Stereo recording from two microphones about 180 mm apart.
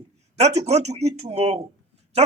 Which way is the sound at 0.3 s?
35° right (ahead or behind).